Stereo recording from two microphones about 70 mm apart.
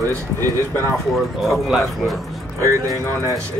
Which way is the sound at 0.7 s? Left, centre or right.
Left.